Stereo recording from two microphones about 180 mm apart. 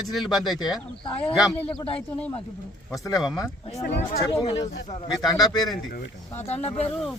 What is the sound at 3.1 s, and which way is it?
Speech, 5° right (ahead or behind).